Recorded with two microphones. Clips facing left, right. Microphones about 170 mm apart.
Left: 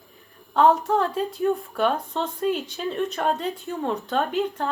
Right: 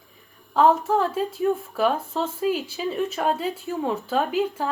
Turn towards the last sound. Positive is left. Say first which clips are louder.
# right 1 dB
turn(degrees=0)  # may be behind; listen again after turning